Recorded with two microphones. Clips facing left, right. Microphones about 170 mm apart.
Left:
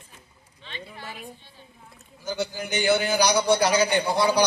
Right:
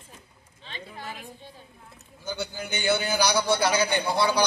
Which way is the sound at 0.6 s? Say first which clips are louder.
Left 1 dB; 40° right (ahead or behind).